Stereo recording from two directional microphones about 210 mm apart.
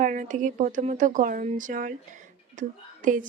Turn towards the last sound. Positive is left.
turn(degrees=-40)  # may be behind; listen again after turning